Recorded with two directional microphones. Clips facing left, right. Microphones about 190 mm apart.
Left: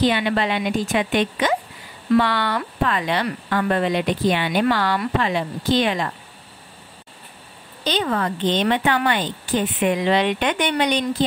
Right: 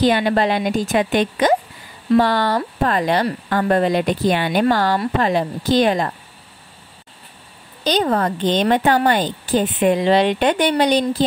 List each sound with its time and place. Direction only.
0.0 s speech: 40° right (ahead or behind)
7.8 s speech: 40° right (ahead or behind)